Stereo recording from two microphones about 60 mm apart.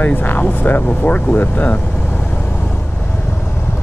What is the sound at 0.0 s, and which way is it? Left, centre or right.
Speech, left.